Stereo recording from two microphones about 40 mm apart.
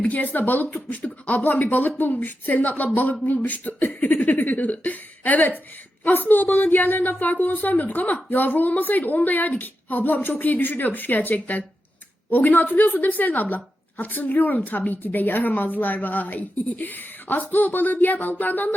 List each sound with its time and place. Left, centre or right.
0.0 s a woman's voice: left
0.7 s a sound: left
1.5 s a woman's voice: left